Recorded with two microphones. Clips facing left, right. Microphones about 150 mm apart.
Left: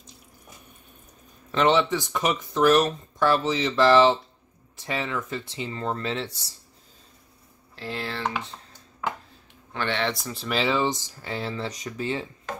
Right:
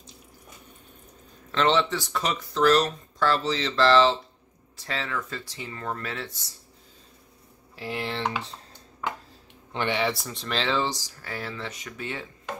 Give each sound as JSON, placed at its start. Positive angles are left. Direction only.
{"t": 1.5, "sound": "speech", "side_deg": 10}
{"t": 7.7, "sound": "speech", "side_deg": -15}
{"t": 9.7, "sound": "speech", "side_deg": -15}